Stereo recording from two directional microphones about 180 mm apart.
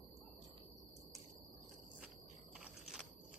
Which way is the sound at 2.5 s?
5° right (ahead or behind).